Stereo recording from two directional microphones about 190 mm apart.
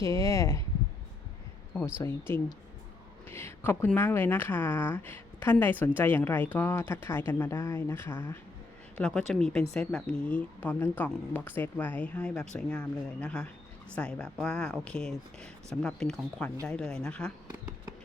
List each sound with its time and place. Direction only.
0.0 s speech: 15° left (ahead or behind)
2.0 s speech: 10° left (ahead or behind)